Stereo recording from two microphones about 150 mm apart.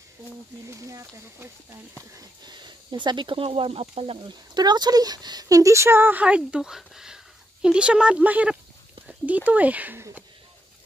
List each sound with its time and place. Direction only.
0.7 s speech: 20° right (ahead or behind)
2.1 s speech: 30° right (ahead or behind); by 10.2 s 15° right (ahead or behind)